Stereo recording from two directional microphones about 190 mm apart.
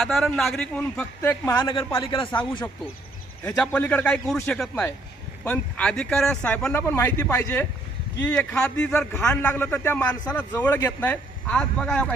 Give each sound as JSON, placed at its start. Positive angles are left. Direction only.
{"t": 0.0, "sound": "a man's voice", "side_deg": 0}
{"t": 1.6, "sound": "a man's voice", "side_deg": 25}
{"t": 3.4, "sound": "speech", "side_deg": 5}